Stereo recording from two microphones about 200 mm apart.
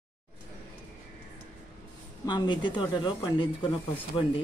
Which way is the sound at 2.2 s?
20° left (ahead or behind).